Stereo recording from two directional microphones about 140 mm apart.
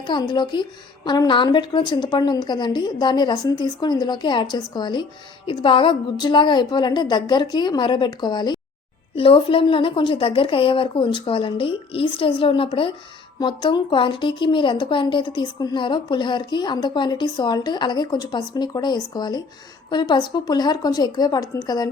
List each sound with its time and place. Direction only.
0.0 s a woman's voice: 30° left (ahead or behind)
9.1 s a woman's voice: 40° left (ahead or behind)